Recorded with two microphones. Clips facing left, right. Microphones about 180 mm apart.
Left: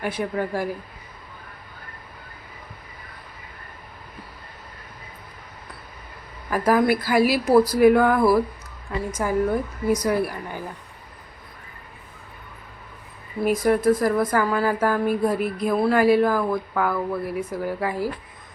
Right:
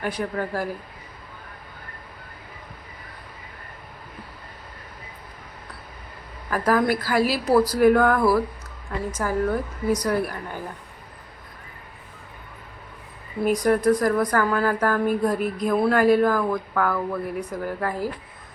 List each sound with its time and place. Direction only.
0.0 s speech: 10° left (ahead or behind)
6.5 s speech: 10° left (ahead or behind)
13.7 s speech: 5° left (ahead or behind)
15.4 s speech: 40° right (ahead or behind)
15.6 s speech: 5° left (ahead or behind)